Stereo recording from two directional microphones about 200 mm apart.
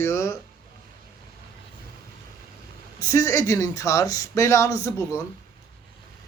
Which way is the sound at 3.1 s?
15° left (ahead or behind).